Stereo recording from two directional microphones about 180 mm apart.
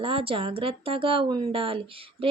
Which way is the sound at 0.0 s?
30° right (ahead or behind).